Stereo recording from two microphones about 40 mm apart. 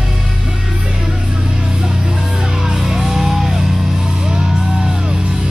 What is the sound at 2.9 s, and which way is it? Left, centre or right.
Music, centre.